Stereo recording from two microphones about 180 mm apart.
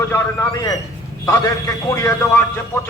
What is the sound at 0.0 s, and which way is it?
A man's voice, 15° left (ahead or behind).